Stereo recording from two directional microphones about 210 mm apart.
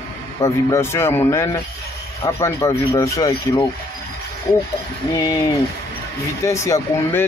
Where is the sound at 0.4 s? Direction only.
15° left (ahead or behind).